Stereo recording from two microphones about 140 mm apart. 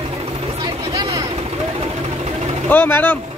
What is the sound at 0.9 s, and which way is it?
Vehicle, 35° right (ahead or behind).